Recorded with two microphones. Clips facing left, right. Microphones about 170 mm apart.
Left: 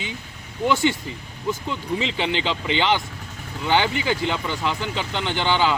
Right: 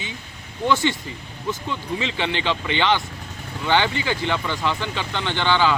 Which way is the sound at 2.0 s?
20° left (ahead or behind).